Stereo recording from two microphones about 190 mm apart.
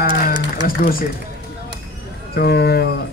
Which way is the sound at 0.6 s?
50° left (ahead or behind).